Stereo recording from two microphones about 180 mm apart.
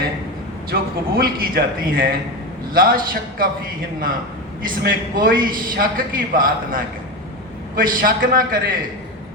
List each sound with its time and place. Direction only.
0.7 s a man's voice: 55° right (ahead or behind)
4.8 s a man's voice: 50° right (ahead or behind)